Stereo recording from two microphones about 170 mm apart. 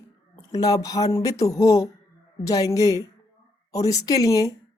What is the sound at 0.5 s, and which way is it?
Speech, 20° left (ahead or behind).